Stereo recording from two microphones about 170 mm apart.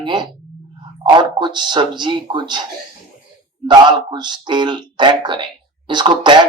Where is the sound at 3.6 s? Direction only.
25° right (ahead or behind).